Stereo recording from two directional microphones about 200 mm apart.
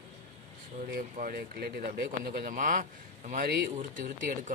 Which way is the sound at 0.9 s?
45° right (ahead or behind).